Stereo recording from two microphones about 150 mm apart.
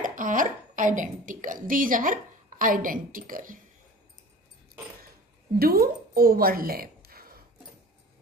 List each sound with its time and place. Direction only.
0.0 s a woman's voice: 60° right (ahead or behind)
5.6 s a woman's voice: 85° right